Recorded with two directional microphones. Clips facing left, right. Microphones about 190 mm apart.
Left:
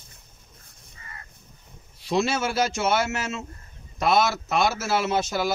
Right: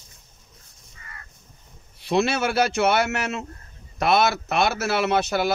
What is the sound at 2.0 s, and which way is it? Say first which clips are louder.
A man's voice: right 2 dB; 60° right (ahead or behind).